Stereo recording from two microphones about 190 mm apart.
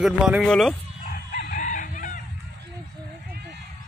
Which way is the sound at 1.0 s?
45° left (ahead or behind).